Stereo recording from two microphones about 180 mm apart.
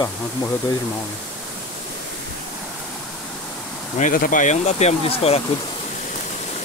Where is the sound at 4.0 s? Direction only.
50° left (ahead or behind).